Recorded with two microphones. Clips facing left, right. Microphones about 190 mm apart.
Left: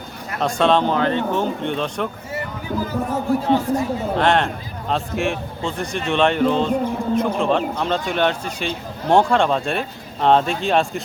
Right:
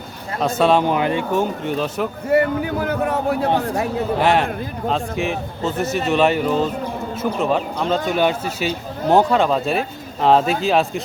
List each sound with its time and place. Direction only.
0.3 s speech: 5° right (ahead or behind)
2.3 s a man's voice: 65° right (ahead or behind)
4.2 s a man's voice: 5° right (ahead or behind)